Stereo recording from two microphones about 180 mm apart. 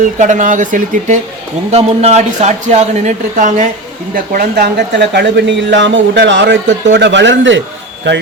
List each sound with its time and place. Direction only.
0.0 s speech: 45° right (ahead or behind); by 7.6 s 90° right
8.1 s speech: 75° right (ahead or behind)